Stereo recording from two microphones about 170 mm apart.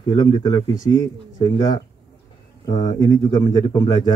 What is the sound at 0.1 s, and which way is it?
Speech, 30° left (ahead or behind).